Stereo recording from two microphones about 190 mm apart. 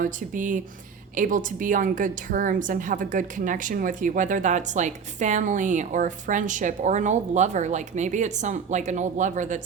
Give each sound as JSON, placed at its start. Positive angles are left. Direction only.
{"t": 0.0, "sound": "a woman's voice", "side_deg": -45}